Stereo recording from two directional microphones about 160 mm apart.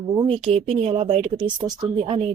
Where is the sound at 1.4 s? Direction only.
25° right (ahead or behind).